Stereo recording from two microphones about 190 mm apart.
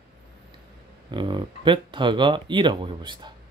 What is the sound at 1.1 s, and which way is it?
Speech, 25° right (ahead or behind).